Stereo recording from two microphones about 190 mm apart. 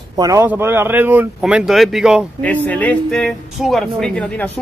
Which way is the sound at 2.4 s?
10° left (ahead or behind).